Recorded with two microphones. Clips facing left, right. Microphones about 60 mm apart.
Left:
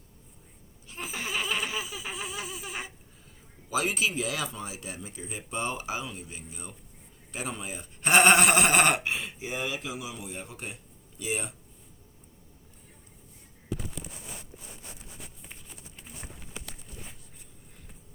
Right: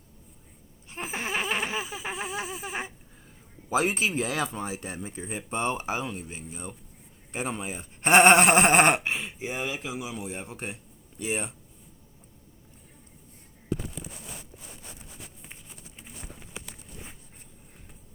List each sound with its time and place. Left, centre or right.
0.9 s a sound: right
3.7 s a man's voice: right
16.6 s walk: centre